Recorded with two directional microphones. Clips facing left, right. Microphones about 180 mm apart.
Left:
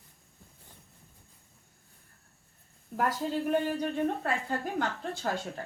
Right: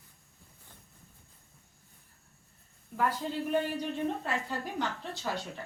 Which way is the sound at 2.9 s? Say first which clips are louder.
Even; 45° left (ahead or behind).